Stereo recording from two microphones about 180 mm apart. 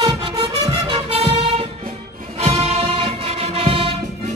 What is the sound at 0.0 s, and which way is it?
Music, 20° right (ahead or behind).